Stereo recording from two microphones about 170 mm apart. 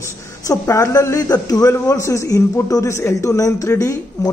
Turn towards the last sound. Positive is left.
turn(degrees=20)  # may be behind; listen again after turning